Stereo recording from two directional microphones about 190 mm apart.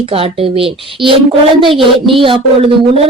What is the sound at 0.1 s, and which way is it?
A woman's voice, 30° right (ahead or behind).